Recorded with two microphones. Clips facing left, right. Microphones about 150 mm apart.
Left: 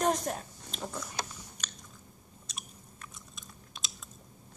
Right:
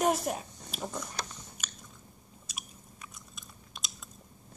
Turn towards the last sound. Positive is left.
turn(degrees=0)  # may be behind; listen again after turning